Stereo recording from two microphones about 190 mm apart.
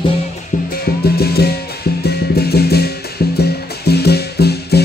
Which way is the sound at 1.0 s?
55° left (ahead or behind).